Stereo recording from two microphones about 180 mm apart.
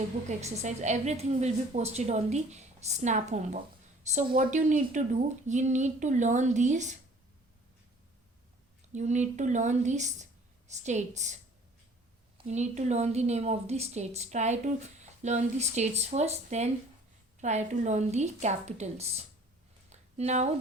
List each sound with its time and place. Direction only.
0.3 s a woman's voice: 40° right (ahead or behind)
8.9 s a woman's voice: 40° right (ahead or behind)
12.4 s a woman's voice: 40° right (ahead or behind)
19.9 s a sound: 40° right (ahead or behind)